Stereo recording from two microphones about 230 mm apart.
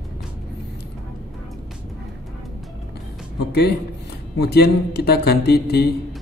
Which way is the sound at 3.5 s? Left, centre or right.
Left.